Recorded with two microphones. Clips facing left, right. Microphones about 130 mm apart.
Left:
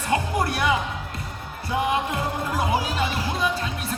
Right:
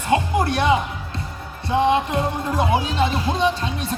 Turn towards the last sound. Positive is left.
turn(degrees=-25)  # may be behind; listen again after turning